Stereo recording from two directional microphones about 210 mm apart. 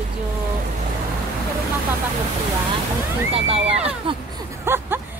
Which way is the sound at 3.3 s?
30° right (ahead or behind).